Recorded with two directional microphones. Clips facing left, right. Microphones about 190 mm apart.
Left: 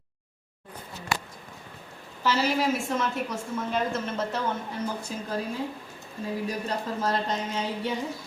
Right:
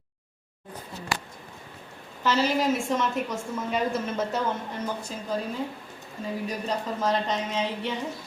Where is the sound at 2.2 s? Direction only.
5° left (ahead or behind).